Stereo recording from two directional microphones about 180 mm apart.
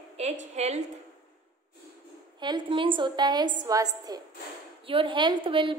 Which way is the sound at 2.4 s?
25° right (ahead or behind).